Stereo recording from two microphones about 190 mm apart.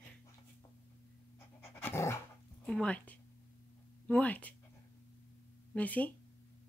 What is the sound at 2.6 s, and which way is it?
Speech, 5° left (ahead or behind).